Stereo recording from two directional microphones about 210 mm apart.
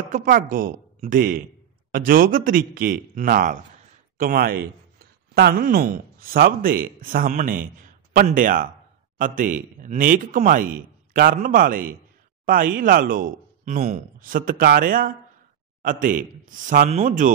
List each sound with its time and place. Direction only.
0.1 s a man's voice: 40° right (ahead or behind)